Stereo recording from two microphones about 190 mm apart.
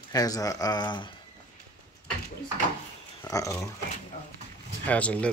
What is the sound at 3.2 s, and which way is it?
Speech, 15° left (ahead or behind).